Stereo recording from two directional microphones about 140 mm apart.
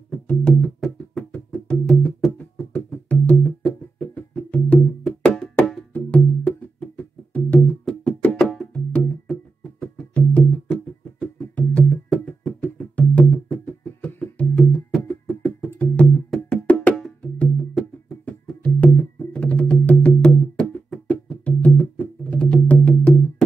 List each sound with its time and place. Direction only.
0.1 s music: 10° left (ahead or behind)